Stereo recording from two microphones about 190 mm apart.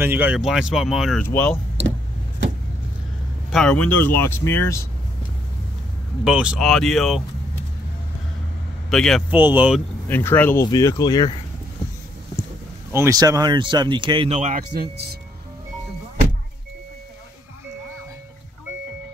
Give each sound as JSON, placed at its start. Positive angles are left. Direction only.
{"t": 0.0, "sound": "speech", "side_deg": -10}
{"t": 1.2, "sound": "speech", "side_deg": 10}
{"t": 3.5, "sound": "speech", "side_deg": 5}
{"t": 6.2, "sound": "speech", "side_deg": -5}
{"t": 8.9, "sound": "speech", "side_deg": 5}
{"t": 9.3, "sound": "speech", "side_deg": -10}
{"t": 10.0, "sound": "speech", "side_deg": 10}
{"t": 12.9, "sound": "speech", "side_deg": -15}
{"t": 14.7, "sound": "speech", "side_deg": -55}